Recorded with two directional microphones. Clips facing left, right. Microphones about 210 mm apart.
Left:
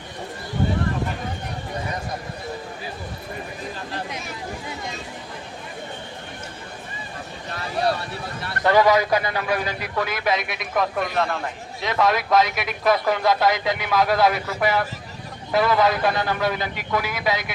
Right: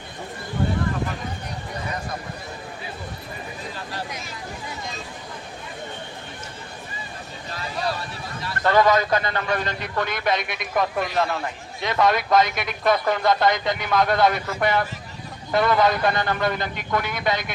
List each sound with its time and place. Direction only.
7.5 s vehicle: 55° left (ahead or behind)
8.6 s a man's voice: 10° left (ahead or behind)